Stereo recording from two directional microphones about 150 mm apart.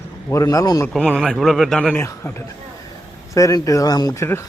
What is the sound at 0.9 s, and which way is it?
A man's voice, 5° left (ahead or behind).